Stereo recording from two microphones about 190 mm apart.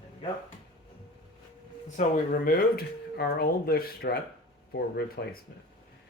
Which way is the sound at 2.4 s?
50° left (ahead or behind).